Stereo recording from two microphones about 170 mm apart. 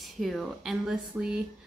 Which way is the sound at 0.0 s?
Centre (ahead or behind).